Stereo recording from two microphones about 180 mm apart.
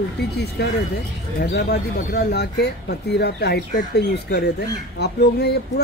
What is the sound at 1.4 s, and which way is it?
Speech, 65° left (ahead or behind).